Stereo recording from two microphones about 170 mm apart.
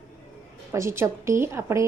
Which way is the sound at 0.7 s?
15° right (ahead or behind).